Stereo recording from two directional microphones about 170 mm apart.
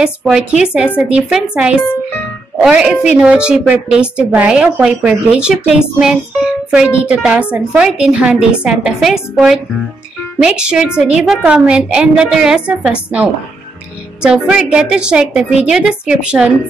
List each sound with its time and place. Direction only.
0.0 s a woman's voice: 5° right (ahead or behind)